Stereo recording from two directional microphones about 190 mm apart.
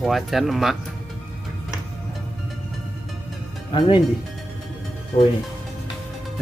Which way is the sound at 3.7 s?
25° left (ahead or behind).